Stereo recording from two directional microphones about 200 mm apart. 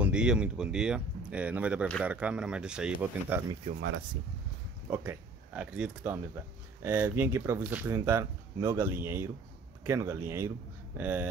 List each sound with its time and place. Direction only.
0.0 s speech: 5° right (ahead or behind)
3.7 s speech: 30° right (ahead or behind)
4.8 s speech: 10° right (ahead or behind)